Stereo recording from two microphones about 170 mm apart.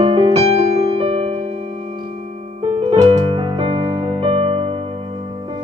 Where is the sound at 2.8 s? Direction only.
35° right (ahead or behind).